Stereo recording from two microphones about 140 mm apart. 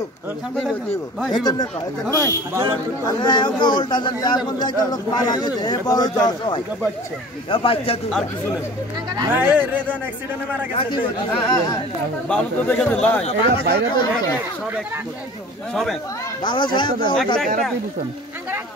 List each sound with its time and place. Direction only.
1.3 s speech: 30° left (ahead or behind)
3.1 s speech: 30° left (ahead or behind)
9.3 s speech: 10° right (ahead or behind)
10.7 s speech: 40° left (ahead or behind)
11.4 s speech: 25° left (ahead or behind)
12.3 s speech: 10° left (ahead or behind)
13.2 s speech: 40° left (ahead or behind)
15.7 s speech: centre (ahead or behind)
16.4 s speech: 35° left (ahead or behind)